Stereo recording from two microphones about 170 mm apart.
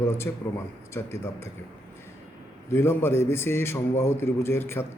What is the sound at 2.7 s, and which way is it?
Speech, 15° left (ahead or behind).